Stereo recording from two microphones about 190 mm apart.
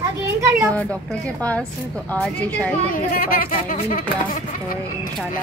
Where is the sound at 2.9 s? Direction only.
50° left (ahead or behind).